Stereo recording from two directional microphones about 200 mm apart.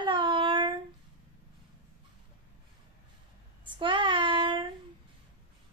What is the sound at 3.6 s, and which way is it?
Child singing, 25° right (ahead or behind).